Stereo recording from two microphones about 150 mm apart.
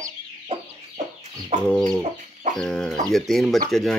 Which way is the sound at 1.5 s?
50° right (ahead or behind).